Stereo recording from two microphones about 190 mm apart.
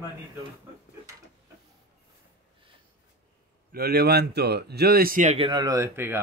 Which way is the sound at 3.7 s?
55° right (ahead or behind).